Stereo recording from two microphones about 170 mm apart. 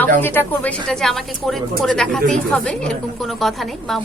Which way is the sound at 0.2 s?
10° left (ahead or behind).